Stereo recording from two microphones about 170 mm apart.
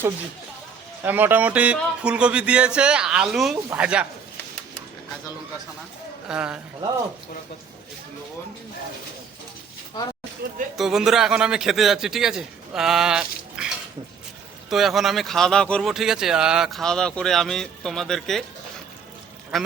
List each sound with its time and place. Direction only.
1.0 s speech: 10° right (ahead or behind)
6.2 s speech: 5° right (ahead or behind)
10.4 s speech: 75° right (ahead or behind)
10.8 s speech: 5° right (ahead or behind)
14.7 s speech: centre (ahead or behind)
19.5 s speech: centre (ahead or behind)